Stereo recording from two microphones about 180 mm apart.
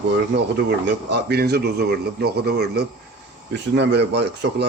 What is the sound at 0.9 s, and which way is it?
A man's voice, 65° right (ahead or behind).